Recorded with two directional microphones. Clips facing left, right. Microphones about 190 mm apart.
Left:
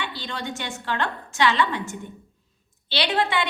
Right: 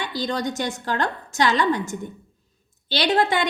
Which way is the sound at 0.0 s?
40° right (ahead or behind).